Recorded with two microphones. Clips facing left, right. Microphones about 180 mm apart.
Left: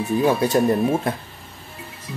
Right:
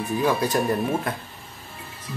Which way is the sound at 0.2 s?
25° left (ahead or behind).